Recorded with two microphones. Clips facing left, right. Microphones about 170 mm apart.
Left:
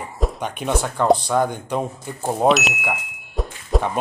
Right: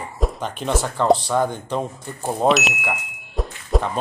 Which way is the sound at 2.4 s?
Centre (ahead or behind).